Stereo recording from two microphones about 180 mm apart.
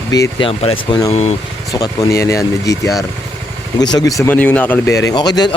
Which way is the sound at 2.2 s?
15° left (ahead or behind).